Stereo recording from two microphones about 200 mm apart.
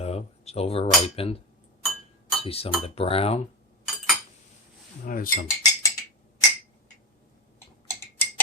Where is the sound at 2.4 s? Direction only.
30° left (ahead or behind).